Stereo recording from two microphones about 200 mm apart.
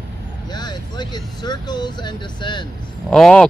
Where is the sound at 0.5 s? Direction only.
20° left (ahead or behind).